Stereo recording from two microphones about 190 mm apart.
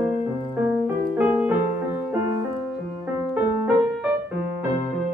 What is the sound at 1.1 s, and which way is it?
Music, 10° right (ahead or behind).